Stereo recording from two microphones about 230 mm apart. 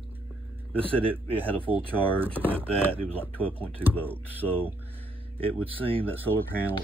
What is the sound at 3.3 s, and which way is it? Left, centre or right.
Speech, centre.